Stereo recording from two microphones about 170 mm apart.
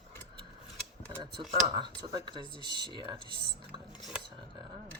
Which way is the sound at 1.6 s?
25° right (ahead or behind).